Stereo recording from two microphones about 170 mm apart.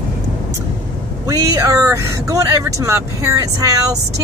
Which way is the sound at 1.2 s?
20° right (ahead or behind).